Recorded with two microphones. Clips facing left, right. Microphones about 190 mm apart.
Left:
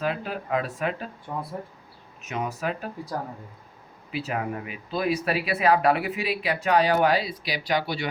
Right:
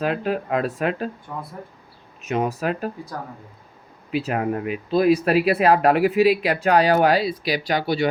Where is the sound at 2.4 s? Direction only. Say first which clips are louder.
Right 5 dB; 90° right.